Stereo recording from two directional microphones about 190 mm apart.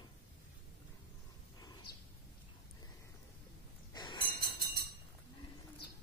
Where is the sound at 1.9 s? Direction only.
55° left (ahead or behind).